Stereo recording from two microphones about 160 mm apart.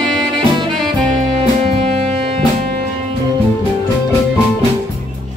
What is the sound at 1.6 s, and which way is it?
Music, 40° right (ahead or behind).